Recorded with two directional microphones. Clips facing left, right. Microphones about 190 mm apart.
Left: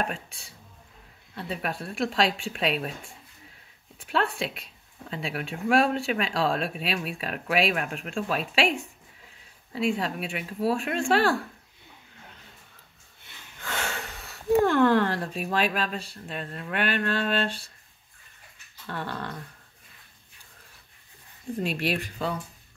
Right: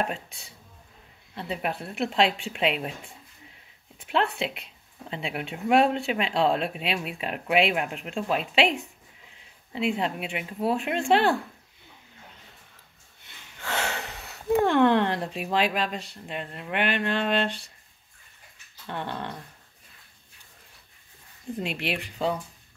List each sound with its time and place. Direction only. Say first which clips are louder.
0.0 s speech: right 1 dB; 25° right (ahead or behind)
13.6 s snort: right 3 dB; 25° right (ahead or behind)
14.7 s speech: even; 20° right (ahead or behind)
18.9 s speech: right 1 dB; 20° right (ahead or behind)
21.6 s speech: left 4 dB; 15° right (ahead or behind)